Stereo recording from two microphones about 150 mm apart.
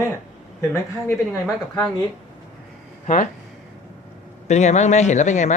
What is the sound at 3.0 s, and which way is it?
Speech, 55° left (ahead or behind).